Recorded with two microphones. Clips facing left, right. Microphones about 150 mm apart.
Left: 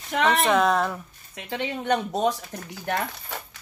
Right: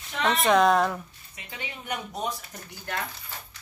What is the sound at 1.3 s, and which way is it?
Speech, 80° left.